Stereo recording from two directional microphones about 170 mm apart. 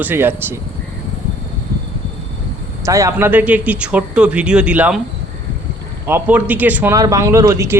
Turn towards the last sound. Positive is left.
turn(degrees=-15)  # may be behind; listen again after turning